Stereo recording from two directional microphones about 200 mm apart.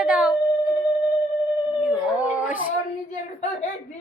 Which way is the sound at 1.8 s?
5° right (ahead or behind).